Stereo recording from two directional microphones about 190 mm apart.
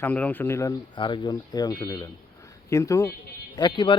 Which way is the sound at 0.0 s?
10° left (ahead or behind).